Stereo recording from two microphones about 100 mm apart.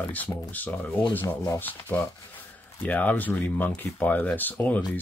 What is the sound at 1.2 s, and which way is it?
Speech, 35° left (ahead or behind).